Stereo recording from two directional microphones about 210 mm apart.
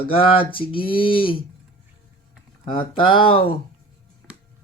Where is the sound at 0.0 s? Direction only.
25° left (ahead or behind).